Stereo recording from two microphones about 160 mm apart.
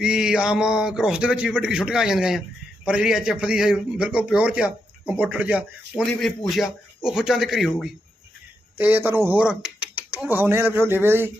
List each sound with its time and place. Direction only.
0.0 s a man's voice: 5° right (ahead or behind)
6.1 s speech: centre (ahead or behind)
8.8 s a man's voice: 10° right (ahead or behind)